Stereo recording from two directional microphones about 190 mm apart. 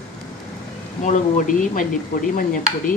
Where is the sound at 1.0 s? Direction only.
40° left (ahead or behind).